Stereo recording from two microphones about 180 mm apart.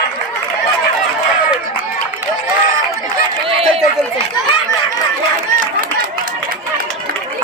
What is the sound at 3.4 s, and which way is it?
Run, 35° right (ahead or behind).